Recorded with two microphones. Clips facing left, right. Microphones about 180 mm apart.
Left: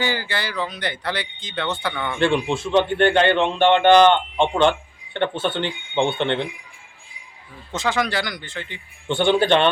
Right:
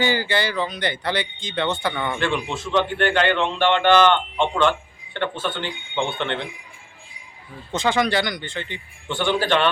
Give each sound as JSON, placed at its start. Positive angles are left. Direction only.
{"t": 0.0, "sound": "speech", "side_deg": 0}
{"t": 2.2, "sound": "a man's voice", "side_deg": 30}
{"t": 7.7, "sound": "speech", "side_deg": 0}
{"t": 9.0, "sound": "speech", "side_deg": 25}